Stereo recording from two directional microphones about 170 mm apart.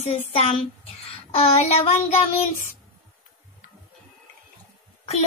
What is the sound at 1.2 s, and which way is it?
Speech, 35° left (ahead or behind).